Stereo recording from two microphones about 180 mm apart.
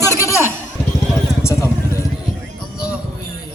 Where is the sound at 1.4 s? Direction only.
15° left (ahead or behind).